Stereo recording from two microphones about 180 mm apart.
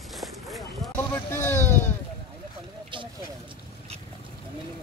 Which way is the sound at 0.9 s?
15° left (ahead or behind).